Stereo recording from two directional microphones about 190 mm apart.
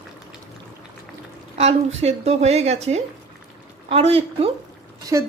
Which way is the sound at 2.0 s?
35° right (ahead or behind).